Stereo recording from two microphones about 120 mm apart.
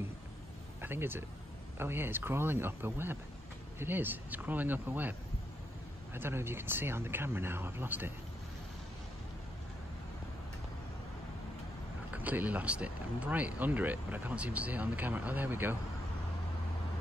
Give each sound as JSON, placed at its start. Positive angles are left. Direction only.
{"t": 0.7, "sound": "speech", "side_deg": -20}
{"t": 6.1, "sound": "speech", "side_deg": -20}
{"t": 12.1, "sound": "speech", "side_deg": -15}